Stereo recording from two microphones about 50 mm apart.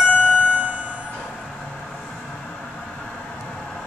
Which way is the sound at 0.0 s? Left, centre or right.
Left.